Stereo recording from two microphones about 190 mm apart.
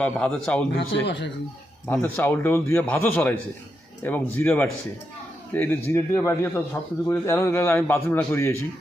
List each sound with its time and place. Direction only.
0.0 s a man's voice: 5° left (ahead or behind)
0.7 s a man's voice: 65° left (ahead or behind)
1.9 s a man's voice: 10° left (ahead or behind)